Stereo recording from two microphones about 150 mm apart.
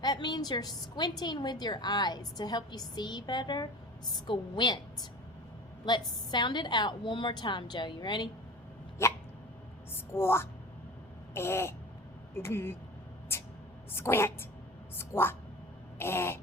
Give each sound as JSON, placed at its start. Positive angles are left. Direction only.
{"t": 0.0, "sound": "a woman's voice", "side_deg": 25}
{"t": 5.8, "sound": "a woman's voice", "side_deg": 30}
{"t": 9.0, "sound": "hiccup", "side_deg": 15}
{"t": 9.9, "sound": "speech", "side_deg": 15}
{"t": 13.3, "sound": "a sound", "side_deg": 15}
{"t": 13.9, "sound": "a woman's voice", "side_deg": 15}